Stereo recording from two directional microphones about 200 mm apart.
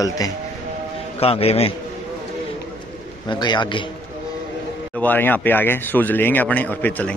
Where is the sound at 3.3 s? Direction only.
25° left (ahead or behind).